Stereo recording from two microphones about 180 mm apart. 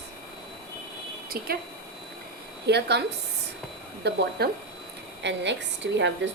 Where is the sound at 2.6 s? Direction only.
70° right (ahead or behind).